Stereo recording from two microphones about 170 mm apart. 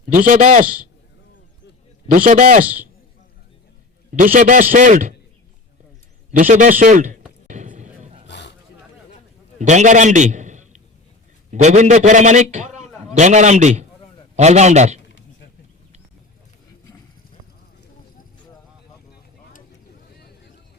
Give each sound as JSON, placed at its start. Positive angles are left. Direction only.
{"t": 0.1, "sound": "a man's voice", "side_deg": -50}
{"t": 2.1, "sound": "a man's voice", "side_deg": -55}
{"t": 4.1, "sound": "a man's voice", "side_deg": -50}
{"t": 6.5, "sound": "a man's voice", "side_deg": -50}
{"t": 7.4, "sound": "a sound", "side_deg": -45}
{"t": 8.3, "sound": "a sound", "side_deg": 90}
{"t": 9.6, "sound": "a man's voice", "side_deg": -45}